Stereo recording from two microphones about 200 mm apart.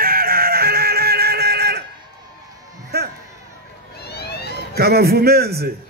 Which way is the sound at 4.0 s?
55° left (ahead or behind).